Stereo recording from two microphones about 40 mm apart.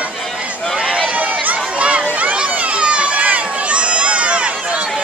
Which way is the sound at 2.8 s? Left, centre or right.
Right.